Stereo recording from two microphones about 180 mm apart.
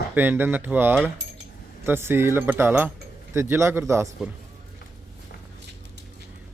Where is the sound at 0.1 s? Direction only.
10° right (ahead or behind).